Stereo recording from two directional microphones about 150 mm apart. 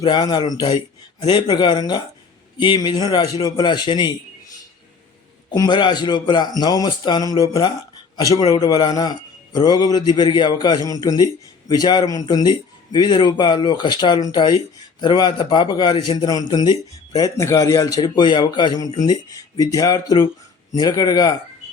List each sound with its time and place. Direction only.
0.0 s a man's voice: 30° left (ahead or behind)
5.5 s a man's voice: 30° left (ahead or behind)
8.3 s a man's voice: 25° left (ahead or behind)